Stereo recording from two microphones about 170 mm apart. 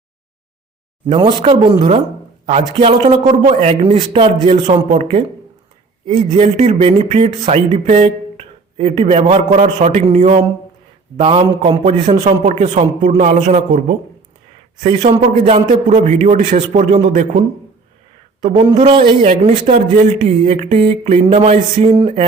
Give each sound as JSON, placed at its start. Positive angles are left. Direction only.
{"t": 1.0, "sound": "a man's voice", "side_deg": -30}
{"t": 18.5, "sound": "a man's voice", "side_deg": -35}